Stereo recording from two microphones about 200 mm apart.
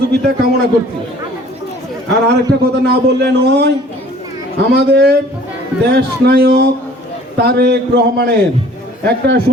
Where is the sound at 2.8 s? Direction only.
55° right (ahead or behind).